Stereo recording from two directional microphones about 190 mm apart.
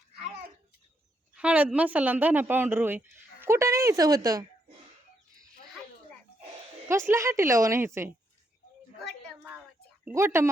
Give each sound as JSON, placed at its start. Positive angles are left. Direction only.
{"t": 1.4, "sound": "speech", "side_deg": -5}
{"t": 6.8, "sound": "speech", "side_deg": -15}
{"t": 10.0, "sound": "speech", "side_deg": -10}